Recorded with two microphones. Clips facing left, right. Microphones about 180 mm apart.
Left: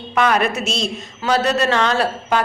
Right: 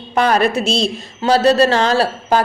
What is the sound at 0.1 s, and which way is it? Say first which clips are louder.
A woman's voice: right 3 dB; 35° right (ahead or behind).